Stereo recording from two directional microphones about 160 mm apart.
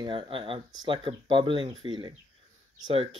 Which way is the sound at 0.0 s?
30° right (ahead or behind).